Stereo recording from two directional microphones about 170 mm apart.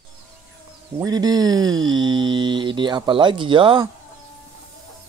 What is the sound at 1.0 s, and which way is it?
Speech, 25° right (ahead or behind).